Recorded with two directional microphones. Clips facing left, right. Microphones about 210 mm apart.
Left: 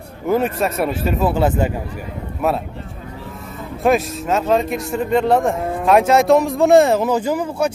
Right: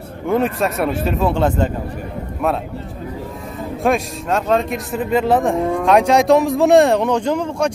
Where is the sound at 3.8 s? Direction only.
Centre (ahead or behind).